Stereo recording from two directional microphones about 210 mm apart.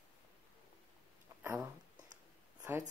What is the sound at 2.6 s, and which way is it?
Writing, 10° right (ahead or behind).